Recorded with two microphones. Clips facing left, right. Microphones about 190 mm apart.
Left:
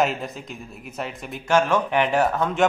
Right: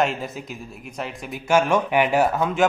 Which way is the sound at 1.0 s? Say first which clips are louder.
Even; 10° right (ahead or behind).